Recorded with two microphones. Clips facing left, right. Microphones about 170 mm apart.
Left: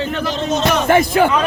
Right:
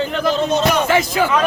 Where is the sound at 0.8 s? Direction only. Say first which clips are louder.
Left 4 dB; 55° left (ahead or behind).